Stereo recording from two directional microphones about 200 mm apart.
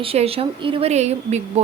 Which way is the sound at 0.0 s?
30° right (ahead or behind).